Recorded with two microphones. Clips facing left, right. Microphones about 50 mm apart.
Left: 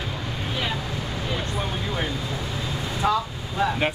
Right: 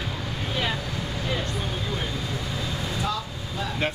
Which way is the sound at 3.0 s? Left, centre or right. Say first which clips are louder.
Left 6 dB; left.